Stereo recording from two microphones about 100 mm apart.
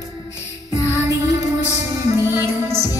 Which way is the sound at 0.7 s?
35° left (ahead or behind).